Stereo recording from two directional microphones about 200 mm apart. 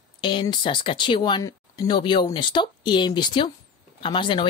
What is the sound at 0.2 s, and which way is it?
Speech, 25° left (ahead or behind).